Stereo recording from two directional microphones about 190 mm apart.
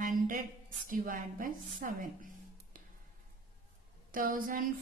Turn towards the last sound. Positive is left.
turn(degrees=-45)  # may be behind; listen again after turning